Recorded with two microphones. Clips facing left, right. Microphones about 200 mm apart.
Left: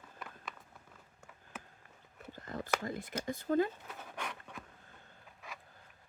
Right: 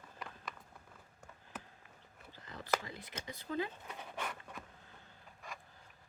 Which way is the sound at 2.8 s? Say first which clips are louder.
Left 8 dB; 45° left (ahead or behind).